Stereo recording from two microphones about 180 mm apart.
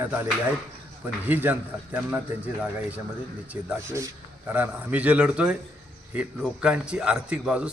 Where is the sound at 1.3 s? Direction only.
10° right (ahead or behind).